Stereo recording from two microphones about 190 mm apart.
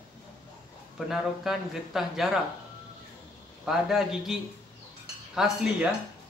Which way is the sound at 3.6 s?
Centre (ahead or behind).